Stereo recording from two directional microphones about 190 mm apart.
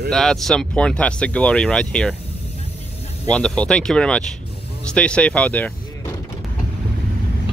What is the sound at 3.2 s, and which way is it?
Speech, 5° left (ahead or behind).